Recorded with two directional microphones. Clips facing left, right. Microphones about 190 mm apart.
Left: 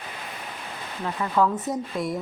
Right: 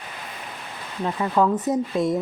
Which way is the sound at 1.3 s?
20° right (ahead or behind).